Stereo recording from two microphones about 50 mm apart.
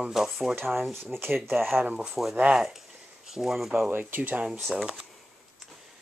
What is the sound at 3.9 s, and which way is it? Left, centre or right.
Speech, right.